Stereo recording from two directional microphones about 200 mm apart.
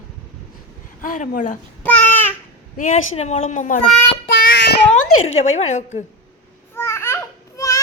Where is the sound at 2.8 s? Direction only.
35° left (ahead or behind).